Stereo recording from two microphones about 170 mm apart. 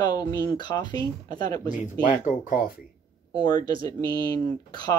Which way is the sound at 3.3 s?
25° left (ahead or behind).